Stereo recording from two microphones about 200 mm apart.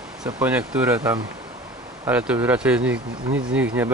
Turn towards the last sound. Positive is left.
turn(degrees=-5)  # may be behind; listen again after turning